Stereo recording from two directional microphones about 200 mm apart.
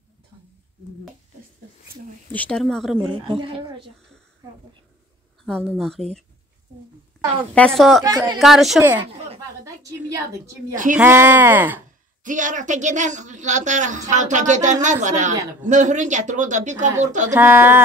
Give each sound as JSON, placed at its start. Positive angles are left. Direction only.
{"t": 2.3, "sound": "speech", "side_deg": 5}
{"t": 3.3, "sound": "a woman's voice", "side_deg": -25}
{"t": 5.4, "sound": "speech", "side_deg": 5}
{"t": 7.5, "sound": "speech", "side_deg": 0}
{"t": 8.0, "sound": "a woman's voice", "side_deg": -15}
{"t": 8.4, "sound": "speech", "side_deg": 0}
{"t": 9.8, "sound": "a woman's voice", "side_deg": -15}
{"t": 12.2, "sound": "speech", "side_deg": -40}
{"t": 17.3, "sound": "a woman's voice", "side_deg": -10}